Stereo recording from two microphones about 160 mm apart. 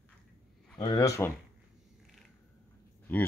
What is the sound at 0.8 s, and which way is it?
Speech, 25° left (ahead or behind).